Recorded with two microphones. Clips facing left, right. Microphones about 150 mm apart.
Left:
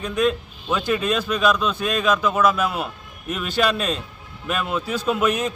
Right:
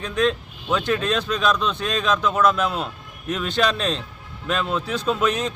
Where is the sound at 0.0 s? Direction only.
5° left (ahead or behind).